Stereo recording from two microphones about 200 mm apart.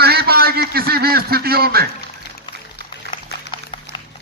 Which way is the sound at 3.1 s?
25° left (ahead or behind).